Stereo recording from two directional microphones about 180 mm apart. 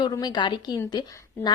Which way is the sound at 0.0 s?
25° left (ahead or behind).